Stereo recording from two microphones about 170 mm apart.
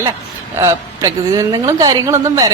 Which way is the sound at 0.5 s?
15° right (ahead or behind).